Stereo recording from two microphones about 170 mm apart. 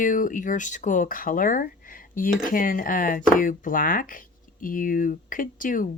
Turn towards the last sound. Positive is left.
turn(degrees=50)  # may be behind; listen again after turning